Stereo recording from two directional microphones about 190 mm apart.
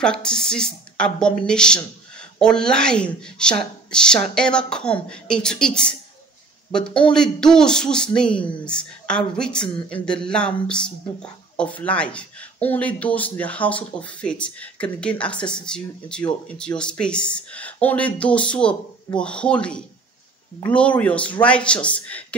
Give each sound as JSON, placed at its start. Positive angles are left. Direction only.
{"t": 0.0, "sound": "a woman's voice", "side_deg": 5}